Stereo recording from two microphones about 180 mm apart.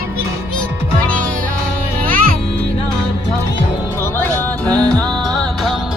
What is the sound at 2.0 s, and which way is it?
Music, 50° right (ahead or behind).